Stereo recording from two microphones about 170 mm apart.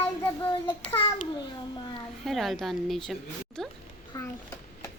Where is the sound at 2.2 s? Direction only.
Centre (ahead or behind).